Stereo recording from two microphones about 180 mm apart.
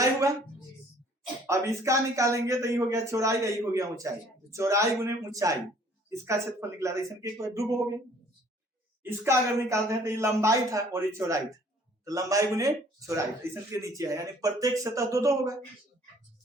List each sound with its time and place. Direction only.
0.0 s a sound: 15° right (ahead or behind)
1.5 s speech: 15° right (ahead or behind)
9.0 s speech: 15° right (ahead or behind)